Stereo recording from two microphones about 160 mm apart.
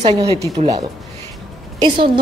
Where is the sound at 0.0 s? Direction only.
25° right (ahead or behind).